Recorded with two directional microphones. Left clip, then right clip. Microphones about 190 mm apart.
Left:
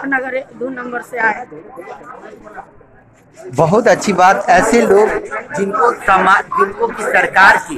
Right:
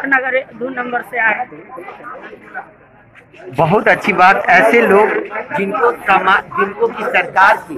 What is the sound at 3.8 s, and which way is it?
Speech, 45° left (ahead or behind).